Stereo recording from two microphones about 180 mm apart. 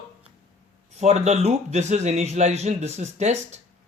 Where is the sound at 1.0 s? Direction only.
35° right (ahead or behind).